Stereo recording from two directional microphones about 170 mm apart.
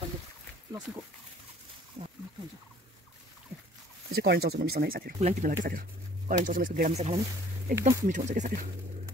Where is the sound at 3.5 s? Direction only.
10° right (ahead or behind).